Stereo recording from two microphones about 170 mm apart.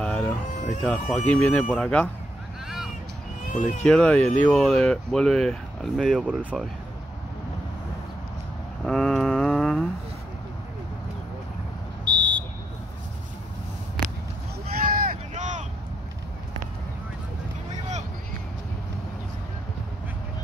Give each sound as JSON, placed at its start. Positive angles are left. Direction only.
{"t": 0.0, "sound": "a sound", "side_deg": 5}
{"t": 0.8, "sound": "speech", "side_deg": 0}
{"t": 3.5, "sound": "speech", "side_deg": 45}
{"t": 3.8, "sound": "speech", "side_deg": 5}
{"t": 8.8, "sound": "a sound", "side_deg": 5}
{"t": 12.0, "sound": "buzzer", "side_deg": -25}
{"t": 14.7, "sound": "vehicle", "side_deg": -60}